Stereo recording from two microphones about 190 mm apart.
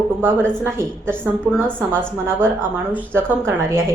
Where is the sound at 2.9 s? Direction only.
10° right (ahead or behind).